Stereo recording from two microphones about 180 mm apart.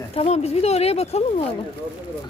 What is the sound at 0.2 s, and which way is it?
Speech, 35° left (ahead or behind).